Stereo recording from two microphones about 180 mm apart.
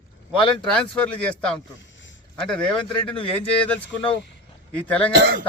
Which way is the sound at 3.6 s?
5° left (ahead or behind).